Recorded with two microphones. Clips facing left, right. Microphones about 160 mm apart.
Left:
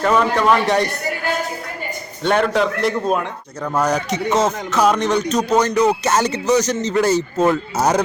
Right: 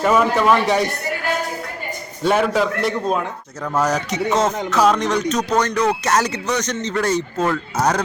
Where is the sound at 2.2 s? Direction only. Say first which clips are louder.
Even; 5° right (ahead or behind).